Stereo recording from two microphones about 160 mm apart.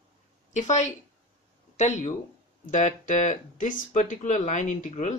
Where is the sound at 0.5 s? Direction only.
45° left (ahead or behind).